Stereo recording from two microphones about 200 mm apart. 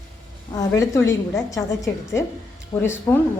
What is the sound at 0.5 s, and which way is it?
A woman's voice, 15° left (ahead or behind).